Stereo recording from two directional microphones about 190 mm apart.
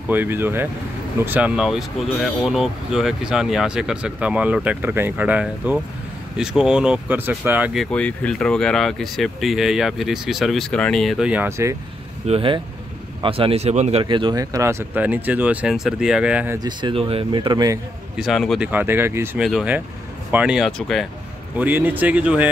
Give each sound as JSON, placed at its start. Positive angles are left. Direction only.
{"t": 0.1, "sound": "speech", "side_deg": -10}
{"t": 12.3, "sound": "speech", "side_deg": -25}
{"t": 16.5, "sound": "speech", "side_deg": -25}
{"t": 18.1, "sound": "speech", "side_deg": 0}
{"t": 18.7, "sound": "speech", "side_deg": -10}
{"t": 21.5, "sound": "speech", "side_deg": -10}